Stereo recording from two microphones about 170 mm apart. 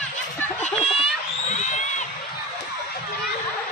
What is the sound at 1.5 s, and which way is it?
Crowd, 45° left (ahead or behind).